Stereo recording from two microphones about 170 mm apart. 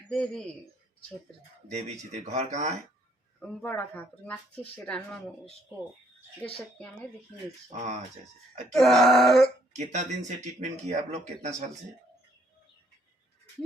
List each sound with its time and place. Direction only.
0.1 s a sound: 5° left (ahead or behind)
1.6 s speech: 40° right (ahead or behind)
3.5 s speech: 10° left (ahead or behind)
6.4 s speech: 5° left (ahead or behind)
7.7 s speech: 45° right (ahead or behind)
8.7 s a sound: centre (ahead or behind)
9.7 s speech: 45° right (ahead or behind)